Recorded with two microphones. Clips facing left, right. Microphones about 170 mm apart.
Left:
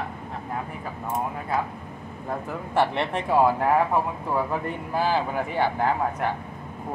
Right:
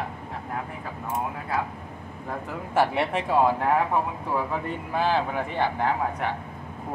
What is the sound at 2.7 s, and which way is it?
Speech, 5° right (ahead or behind).